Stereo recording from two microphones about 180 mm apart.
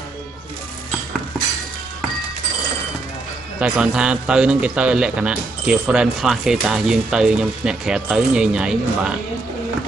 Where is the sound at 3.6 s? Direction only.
5° right (ahead or behind).